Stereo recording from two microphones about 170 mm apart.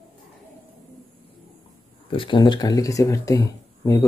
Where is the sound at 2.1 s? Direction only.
30° left (ahead or behind).